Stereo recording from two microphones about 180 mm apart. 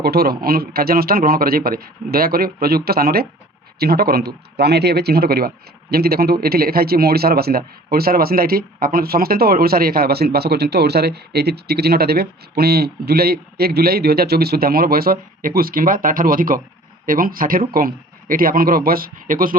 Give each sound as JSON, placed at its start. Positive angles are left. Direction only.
{"t": 0.0, "sound": "speech", "side_deg": -60}